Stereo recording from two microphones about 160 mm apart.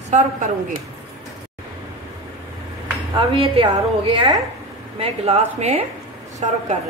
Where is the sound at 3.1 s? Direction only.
35° right (ahead or behind).